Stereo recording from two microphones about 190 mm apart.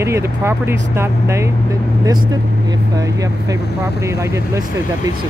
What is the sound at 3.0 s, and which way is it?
Speech, 20° right (ahead or behind).